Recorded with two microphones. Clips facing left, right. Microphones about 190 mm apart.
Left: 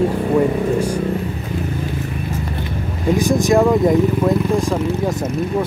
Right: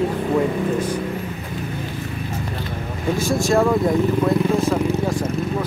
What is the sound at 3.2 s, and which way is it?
Speech, 15° left (ahead or behind).